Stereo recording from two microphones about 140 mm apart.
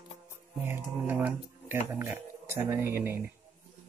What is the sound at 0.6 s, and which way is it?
Speech, 15° right (ahead or behind).